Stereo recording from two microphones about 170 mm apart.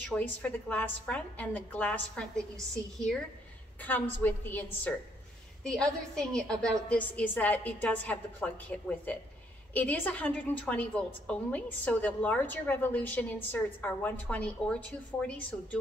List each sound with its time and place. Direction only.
0.1 s a woman's voice: 10° left (ahead or behind)
3.8 s a woman's voice: 10° left (ahead or behind)